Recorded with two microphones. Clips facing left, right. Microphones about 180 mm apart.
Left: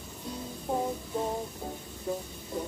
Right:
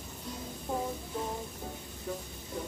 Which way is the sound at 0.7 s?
30° left (ahead or behind).